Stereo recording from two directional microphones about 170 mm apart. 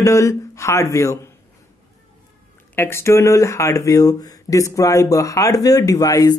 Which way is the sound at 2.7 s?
15° left (ahead or behind).